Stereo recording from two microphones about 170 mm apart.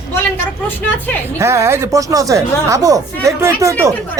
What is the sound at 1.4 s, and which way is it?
Speech, 15° right (ahead or behind).